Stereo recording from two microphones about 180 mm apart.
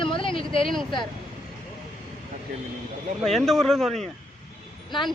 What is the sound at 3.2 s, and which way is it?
Speech, centre (ahead or behind).